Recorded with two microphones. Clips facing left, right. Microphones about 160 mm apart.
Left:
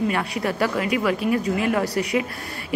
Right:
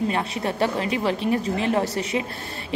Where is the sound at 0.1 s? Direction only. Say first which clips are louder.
Left 1 dB; 25° right (ahead or behind).